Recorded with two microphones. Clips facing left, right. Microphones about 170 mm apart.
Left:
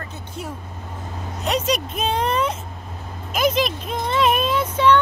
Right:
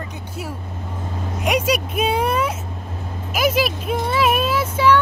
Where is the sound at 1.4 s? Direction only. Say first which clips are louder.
Right 2 dB; 10° right (ahead or behind).